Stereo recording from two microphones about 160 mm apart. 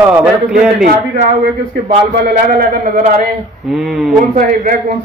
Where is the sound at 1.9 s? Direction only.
65° right (ahead or behind).